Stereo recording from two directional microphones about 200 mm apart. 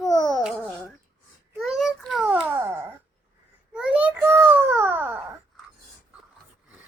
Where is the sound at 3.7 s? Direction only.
5° right (ahead or behind).